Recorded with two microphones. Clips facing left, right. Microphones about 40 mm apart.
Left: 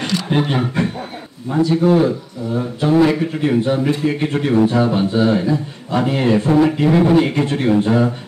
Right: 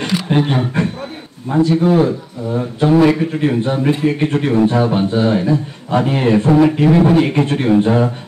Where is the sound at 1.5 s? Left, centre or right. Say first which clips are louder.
Right 1 dB; right.